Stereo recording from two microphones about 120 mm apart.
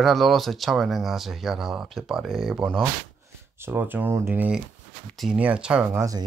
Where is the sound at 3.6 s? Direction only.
20° right (ahead or behind).